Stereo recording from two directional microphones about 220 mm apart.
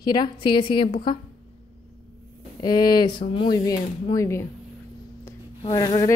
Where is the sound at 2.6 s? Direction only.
20° left (ahead or behind).